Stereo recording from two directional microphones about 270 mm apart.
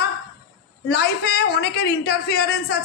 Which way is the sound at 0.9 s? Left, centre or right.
Left.